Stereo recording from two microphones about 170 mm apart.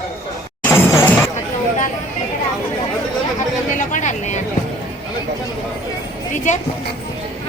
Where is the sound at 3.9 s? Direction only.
45° left (ahead or behind).